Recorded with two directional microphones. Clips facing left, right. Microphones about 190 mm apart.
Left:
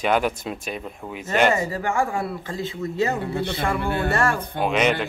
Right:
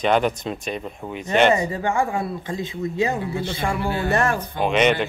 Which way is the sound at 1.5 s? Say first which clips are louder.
Right 2 dB; 20° right (ahead or behind).